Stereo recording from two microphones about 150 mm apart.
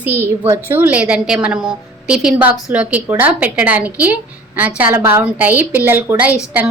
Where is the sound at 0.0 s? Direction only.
15° right (ahead or behind).